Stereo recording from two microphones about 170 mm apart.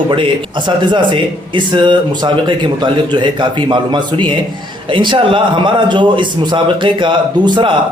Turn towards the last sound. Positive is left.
turn(degrees=-25)  # may be behind; listen again after turning